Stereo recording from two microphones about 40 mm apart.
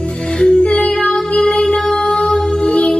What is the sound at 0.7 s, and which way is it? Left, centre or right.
Child singing, left.